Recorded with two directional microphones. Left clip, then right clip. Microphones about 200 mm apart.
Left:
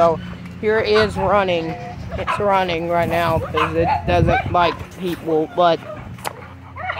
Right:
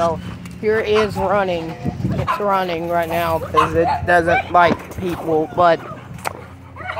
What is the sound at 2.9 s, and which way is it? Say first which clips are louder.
Speech: even; 15° left (ahead or behind).